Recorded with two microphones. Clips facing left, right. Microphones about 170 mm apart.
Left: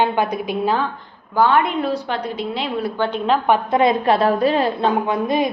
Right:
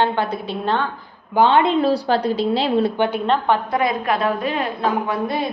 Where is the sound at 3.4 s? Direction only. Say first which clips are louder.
Left 3 dB; 20° left (ahead or behind).